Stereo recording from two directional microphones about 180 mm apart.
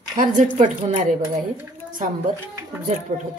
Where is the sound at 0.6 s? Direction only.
40° right (ahead or behind).